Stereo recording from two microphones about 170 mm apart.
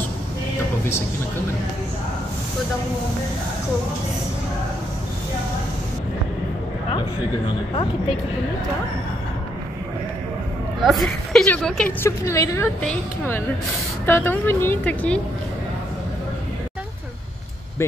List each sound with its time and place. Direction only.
10.8 s a woman's voice: centre (ahead or behind)
12.3 s speech: 15° left (ahead or behind)